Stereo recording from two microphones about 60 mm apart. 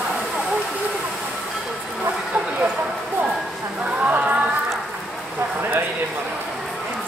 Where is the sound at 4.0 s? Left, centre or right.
Right.